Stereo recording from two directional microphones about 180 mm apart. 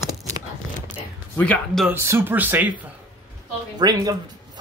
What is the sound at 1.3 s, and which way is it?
Speech, 10° left (ahead or behind).